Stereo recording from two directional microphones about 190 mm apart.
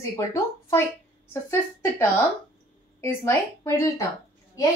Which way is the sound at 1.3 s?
15° left (ahead or behind).